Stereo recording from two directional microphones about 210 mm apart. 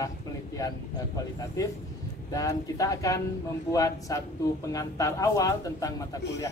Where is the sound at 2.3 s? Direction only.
15° left (ahead or behind).